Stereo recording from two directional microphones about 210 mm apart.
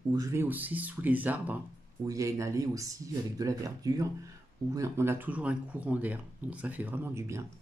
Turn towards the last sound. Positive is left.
turn(degrees=-15)  # may be behind; listen again after turning